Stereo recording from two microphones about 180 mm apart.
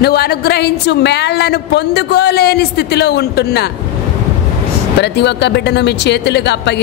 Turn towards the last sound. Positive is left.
turn(degrees=70)  # may be behind; listen again after turning